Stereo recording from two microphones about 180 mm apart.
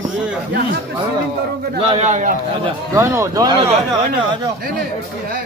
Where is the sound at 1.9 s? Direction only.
40° right (ahead or behind).